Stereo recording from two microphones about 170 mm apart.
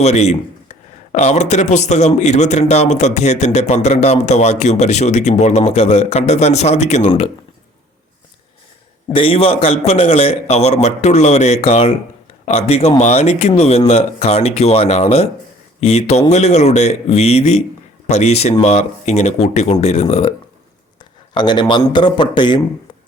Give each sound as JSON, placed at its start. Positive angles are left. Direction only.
{"t": 0.0, "sound": "a man's voice", "side_deg": 40}
{"t": 9.1, "sound": "a man's voice", "side_deg": 35}
{"t": 21.0, "sound": "speech", "side_deg": 25}